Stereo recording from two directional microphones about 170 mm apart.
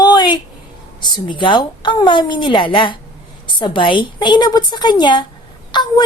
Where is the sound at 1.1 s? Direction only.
30° left (ahead or behind).